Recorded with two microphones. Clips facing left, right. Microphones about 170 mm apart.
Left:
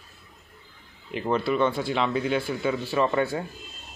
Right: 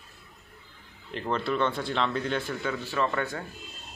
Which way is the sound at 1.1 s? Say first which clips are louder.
Left 4 dB; 10° left (ahead or behind).